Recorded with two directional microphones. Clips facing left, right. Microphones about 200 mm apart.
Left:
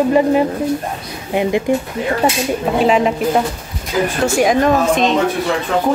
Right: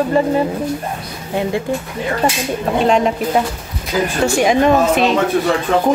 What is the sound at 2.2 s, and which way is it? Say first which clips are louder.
Speech: left 1 dB; 10° left (ahead or behind).